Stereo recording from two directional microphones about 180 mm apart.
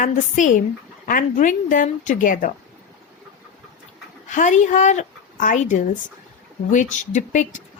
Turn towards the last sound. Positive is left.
turn(degrees=45)  # may be behind; listen again after turning